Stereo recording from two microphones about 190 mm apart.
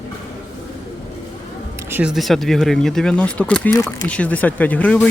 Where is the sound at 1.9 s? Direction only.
5° right (ahead or behind).